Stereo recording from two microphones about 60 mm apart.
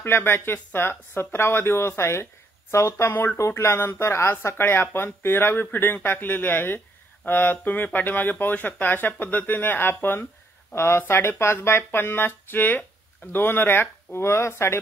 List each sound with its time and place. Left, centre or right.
0.0 s speech: left
3.1 s speech: left
3.3 s speech: left
10.7 s speech: left